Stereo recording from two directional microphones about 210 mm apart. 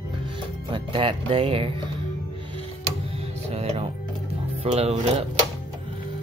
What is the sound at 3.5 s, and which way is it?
Music, 30° right (ahead or behind).